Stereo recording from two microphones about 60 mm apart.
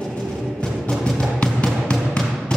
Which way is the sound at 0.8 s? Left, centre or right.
Centre.